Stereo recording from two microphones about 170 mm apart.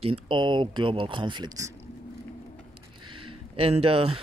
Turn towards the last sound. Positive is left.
turn(degrees=-35)  # may be behind; listen again after turning